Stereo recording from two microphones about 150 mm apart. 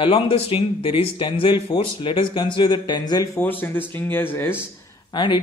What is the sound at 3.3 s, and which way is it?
Speech, 15° left (ahead or behind).